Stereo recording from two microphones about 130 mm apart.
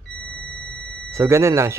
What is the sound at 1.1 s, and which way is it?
Speech, 20° right (ahead or behind).